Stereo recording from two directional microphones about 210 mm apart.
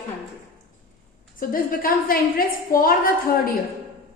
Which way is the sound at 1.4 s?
40° left (ahead or behind).